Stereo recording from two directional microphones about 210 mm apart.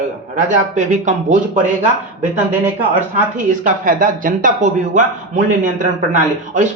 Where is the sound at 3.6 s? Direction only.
40° right (ahead or behind).